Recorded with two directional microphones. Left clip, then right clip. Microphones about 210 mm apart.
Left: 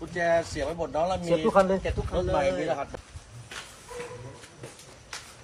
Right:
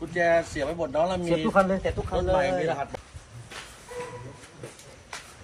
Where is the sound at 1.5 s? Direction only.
35° left (ahead or behind).